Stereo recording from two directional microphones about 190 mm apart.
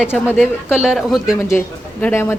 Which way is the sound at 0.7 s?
5° right (ahead or behind).